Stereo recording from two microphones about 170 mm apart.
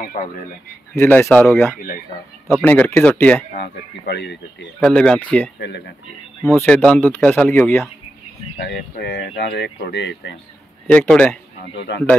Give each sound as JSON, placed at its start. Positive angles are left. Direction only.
{"t": 0.0, "sound": "speech", "side_deg": 45}
{"t": 0.9, "sound": "speech", "side_deg": 10}
{"t": 3.5, "sound": "speech", "side_deg": 65}
{"t": 4.7, "sound": "speech", "side_deg": 5}
{"t": 8.6, "sound": "speech", "side_deg": 70}
{"t": 10.9, "sound": "speech", "side_deg": 10}